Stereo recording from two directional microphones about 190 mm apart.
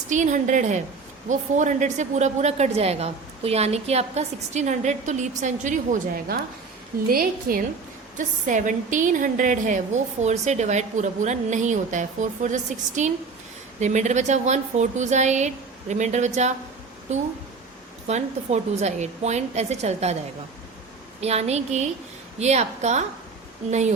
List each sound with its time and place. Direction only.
0.1 s a woman's voice: 40° right (ahead or behind)
18.1 s a woman's voice: 35° right (ahead or behind)
21.2 s a woman's voice: 35° right (ahead or behind)